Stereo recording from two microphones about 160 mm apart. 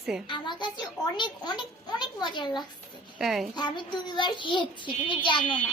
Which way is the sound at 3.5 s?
30° left (ahead or behind).